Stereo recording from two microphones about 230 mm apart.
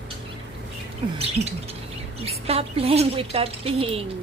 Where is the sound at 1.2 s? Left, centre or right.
Right.